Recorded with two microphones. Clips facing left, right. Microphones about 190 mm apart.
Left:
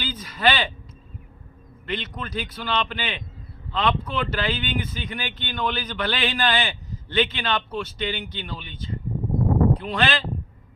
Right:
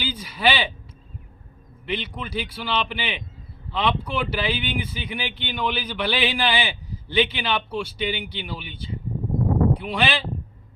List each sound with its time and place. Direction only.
0.0 s speech: 10° right (ahead or behind)
1.9 s speech: 10° right (ahead or behind)